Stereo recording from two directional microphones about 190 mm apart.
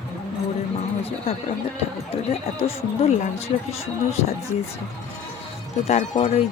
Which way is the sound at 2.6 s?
35° left (ahead or behind).